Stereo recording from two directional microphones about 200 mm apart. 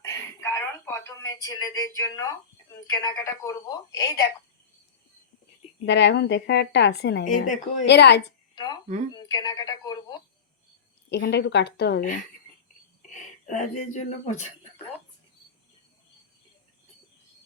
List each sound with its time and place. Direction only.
0.0 s a sound: 15° left (ahead or behind)
2.0 s a woman's voice: 20° left (ahead or behind)
5.8 s a woman's voice: 60° left (ahead or behind)
7.3 s speech: 40° left (ahead or behind)
7.9 s a woman's voice: 60° left (ahead or behind)
8.5 s a sound: 20° left (ahead or behind)
9.1 s speech: 20° left (ahead or behind)
11.1 s a woman's voice: 55° left (ahead or behind)
13.0 s speech: 40° left (ahead or behind)